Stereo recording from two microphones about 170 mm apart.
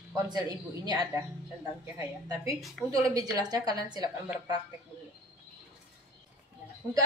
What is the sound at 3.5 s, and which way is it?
Speech, 25° right (ahead or behind).